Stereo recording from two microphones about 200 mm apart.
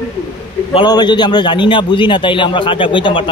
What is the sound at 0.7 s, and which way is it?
A man's voice, 20° left (ahead or behind).